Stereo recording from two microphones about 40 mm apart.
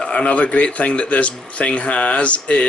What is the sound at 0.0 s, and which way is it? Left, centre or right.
A man's voice, left.